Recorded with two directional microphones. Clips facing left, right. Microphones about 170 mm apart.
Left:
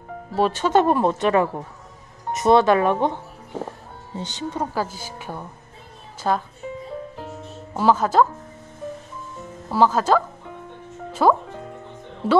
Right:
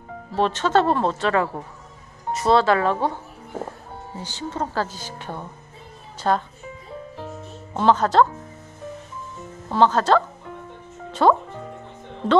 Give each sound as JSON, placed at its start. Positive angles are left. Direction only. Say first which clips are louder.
{"t": 0.4, "sound": "a woman's voice", "louder": "left 1 dB", "side_deg": 10}
{"t": 4.2, "sound": "a woman's voice", "louder": "left 1 dB", "side_deg": 20}
{"t": 7.7, "sound": "speech", "louder": "even", "side_deg": 5}
{"t": 9.7, "sound": "a woman's voice", "louder": "even", "side_deg": 5}
{"t": 11.1, "sound": "music", "louder": "even", "side_deg": 5}
{"t": 12.2, "sound": "a woman's voice", "louder": "even", "side_deg": 5}